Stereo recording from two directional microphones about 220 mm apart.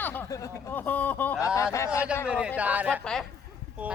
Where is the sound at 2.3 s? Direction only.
5° right (ahead or behind).